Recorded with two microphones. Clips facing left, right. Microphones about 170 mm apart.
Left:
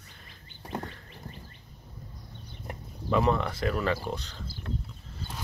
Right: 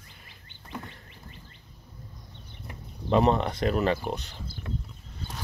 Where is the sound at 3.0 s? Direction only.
25° right (ahead or behind).